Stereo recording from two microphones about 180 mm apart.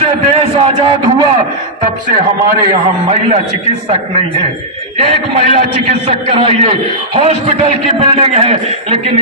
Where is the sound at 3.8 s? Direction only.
35° right (ahead or behind).